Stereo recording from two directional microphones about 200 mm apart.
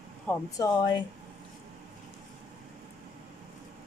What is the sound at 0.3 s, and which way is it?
Speech, 20° left (ahead or behind).